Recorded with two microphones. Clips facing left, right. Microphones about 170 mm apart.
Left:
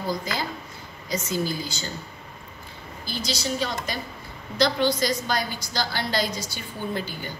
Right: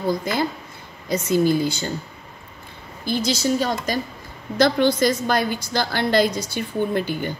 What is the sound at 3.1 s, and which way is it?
A woman's voice, 50° right (ahead or behind).